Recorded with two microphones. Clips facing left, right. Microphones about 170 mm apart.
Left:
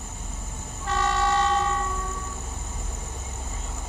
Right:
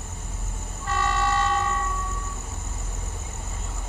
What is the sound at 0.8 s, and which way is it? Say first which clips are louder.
Vehicle: left 1 dB; 20° left (ahead or behind).